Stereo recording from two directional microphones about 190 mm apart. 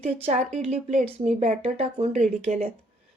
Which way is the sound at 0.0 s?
35° right (ahead or behind).